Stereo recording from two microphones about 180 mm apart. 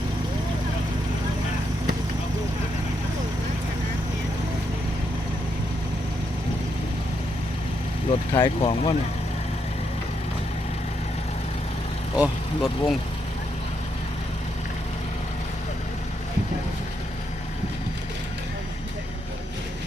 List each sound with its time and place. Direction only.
8.1 s speech: 30° left (ahead or behind)
12.1 s speech: 5° right (ahead or behind)